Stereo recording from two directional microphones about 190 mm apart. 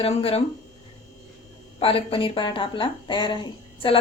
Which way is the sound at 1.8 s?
30° left (ahead or behind).